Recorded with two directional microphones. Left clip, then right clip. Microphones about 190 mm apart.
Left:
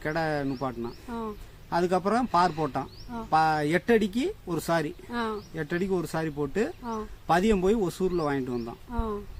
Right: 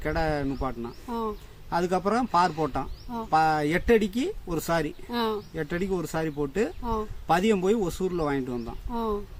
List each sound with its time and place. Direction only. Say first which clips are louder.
0.0 s speech: right 1 dB; 10° left (ahead or behind)
5.1 s speech: right 4 dB; 45° right (ahead or behind)
5.5 s speech: even; 10° left (ahead or behind)
6.8 s speech: right 4 dB; 45° right (ahead or behind)
7.3 s speech: even; 10° left (ahead or behind)
8.9 s speech: right 5 dB; 45° right (ahead or behind)